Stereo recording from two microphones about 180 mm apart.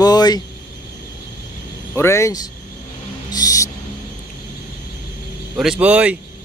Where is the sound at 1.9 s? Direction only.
15° left (ahead or behind).